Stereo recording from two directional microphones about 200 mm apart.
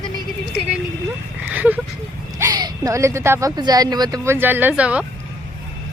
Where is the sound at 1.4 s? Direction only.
10° right (ahead or behind).